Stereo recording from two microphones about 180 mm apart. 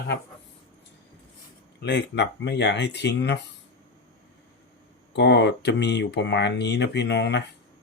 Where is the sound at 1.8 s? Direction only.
70° left (ahead or behind).